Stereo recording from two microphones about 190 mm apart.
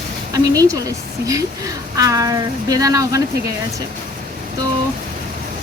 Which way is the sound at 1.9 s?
20° right (ahead or behind).